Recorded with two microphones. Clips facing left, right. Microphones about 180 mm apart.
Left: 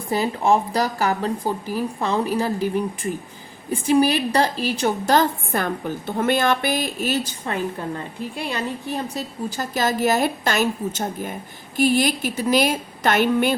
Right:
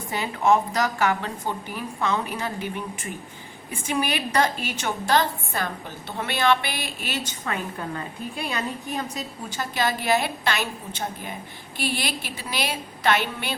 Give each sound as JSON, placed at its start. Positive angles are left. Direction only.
{"t": 0.1, "sound": "a woman's voice", "side_deg": 35}